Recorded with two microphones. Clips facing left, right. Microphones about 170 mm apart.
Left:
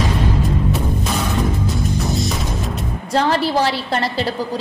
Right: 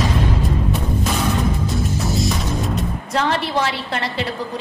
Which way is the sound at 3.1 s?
35° left (ahead or behind).